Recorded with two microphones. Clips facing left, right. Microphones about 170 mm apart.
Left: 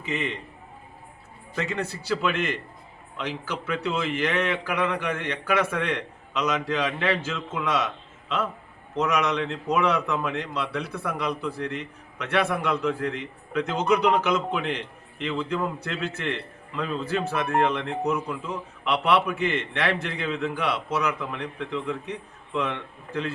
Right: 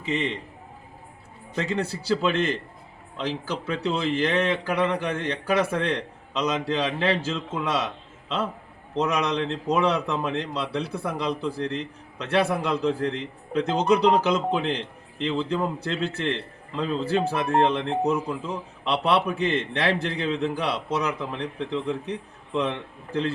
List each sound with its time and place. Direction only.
0.0 s a man's voice: 30° right (ahead or behind)
1.5 s a man's voice: 30° right (ahead or behind)